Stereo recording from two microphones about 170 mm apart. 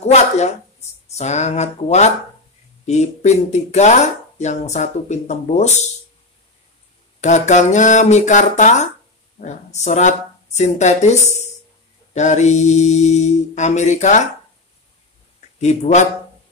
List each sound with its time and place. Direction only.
0.0 s a woman's voice: 40° left (ahead or behind)
7.2 s mantra: 45° left (ahead or behind)
15.6 s mantra: 40° left (ahead or behind)